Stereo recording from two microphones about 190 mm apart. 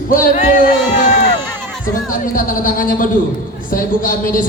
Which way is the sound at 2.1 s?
45° left (ahead or behind).